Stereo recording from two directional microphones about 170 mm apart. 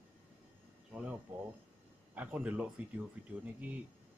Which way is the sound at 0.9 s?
5° right (ahead or behind).